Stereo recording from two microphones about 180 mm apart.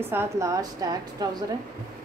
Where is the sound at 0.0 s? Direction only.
15° right (ahead or behind).